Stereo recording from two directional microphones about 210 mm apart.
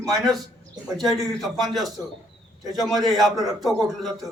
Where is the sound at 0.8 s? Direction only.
Centre (ahead or behind).